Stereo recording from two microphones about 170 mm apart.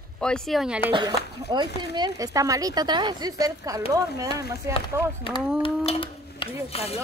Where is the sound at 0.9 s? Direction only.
30° right (ahead or behind).